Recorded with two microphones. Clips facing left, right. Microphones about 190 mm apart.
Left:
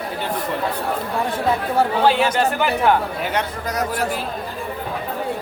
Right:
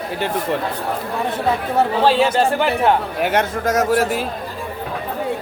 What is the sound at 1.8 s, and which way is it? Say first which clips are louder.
Speech: right 2 dB; 30° right (ahead or behind).